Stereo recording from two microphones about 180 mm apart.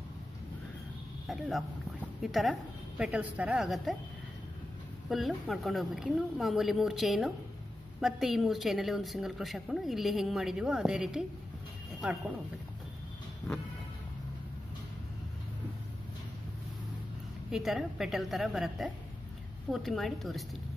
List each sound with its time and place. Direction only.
1.2 s a woman's voice: centre (ahead or behind)
5.1 s a woman's voice: centre (ahead or behind)
17.5 s a woman's voice: centre (ahead or behind)